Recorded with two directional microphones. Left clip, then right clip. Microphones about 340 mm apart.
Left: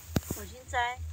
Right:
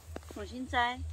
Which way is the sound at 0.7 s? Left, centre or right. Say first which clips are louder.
Even; centre.